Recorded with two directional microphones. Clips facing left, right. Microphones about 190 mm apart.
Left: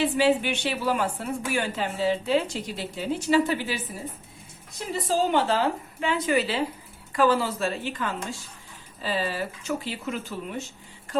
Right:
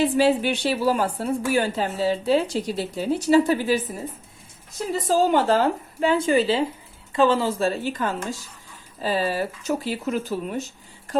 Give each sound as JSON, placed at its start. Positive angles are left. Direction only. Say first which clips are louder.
{"t": 0.0, "sound": "a woman's voice", "louder": "right 3 dB", "side_deg": -40}
{"t": 4.9, "sound": "a woman's voice", "louder": "right 4 dB", "side_deg": -40}
{"t": 7.9, "sound": "a woman's voice", "louder": "right 4 dB", "side_deg": -40}